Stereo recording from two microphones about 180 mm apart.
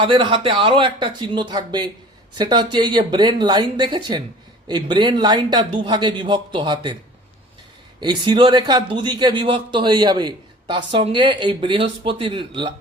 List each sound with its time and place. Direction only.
0.0 s a man's voice: 30° right (ahead or behind)
8.0 s a man's voice: 25° right (ahead or behind)